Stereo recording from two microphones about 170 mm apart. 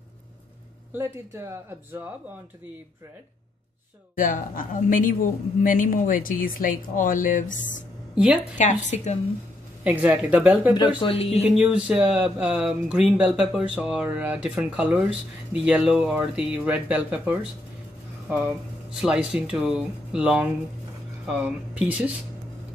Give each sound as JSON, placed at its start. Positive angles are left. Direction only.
{"t": 0.9, "sound": "speech", "side_deg": -15}
{"t": 4.2, "sound": "speech", "side_deg": 50}
{"t": 8.1, "sound": "a woman's voice", "side_deg": -5}
{"t": 8.5, "sound": "speech", "side_deg": 45}
{"t": 9.8, "sound": "speech", "side_deg": -5}
{"t": 11.0, "sound": "speech", "side_deg": 35}
{"t": 11.4, "sound": "speech", "side_deg": -5}
{"t": 18.5, "sound": "speech", "side_deg": -5}